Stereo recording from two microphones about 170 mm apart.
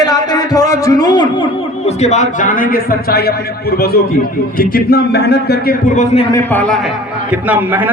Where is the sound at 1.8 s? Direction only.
40° left (ahead or behind).